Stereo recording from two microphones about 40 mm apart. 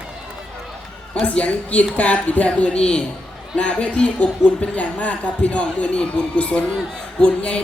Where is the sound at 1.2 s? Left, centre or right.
Left.